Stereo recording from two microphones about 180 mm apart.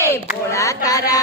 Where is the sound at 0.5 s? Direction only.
20° left (ahead or behind).